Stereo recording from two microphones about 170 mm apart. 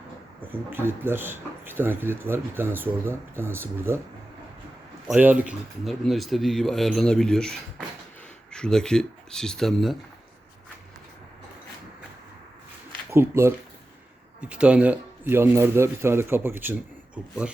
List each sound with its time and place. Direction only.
0.5 s speech: 15° right (ahead or behind)
5.0 s speech: 10° right (ahead or behind)
13.1 s speech: 15° right (ahead or behind)